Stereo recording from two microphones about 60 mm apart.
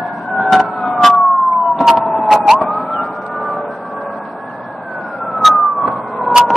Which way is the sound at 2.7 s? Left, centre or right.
Centre.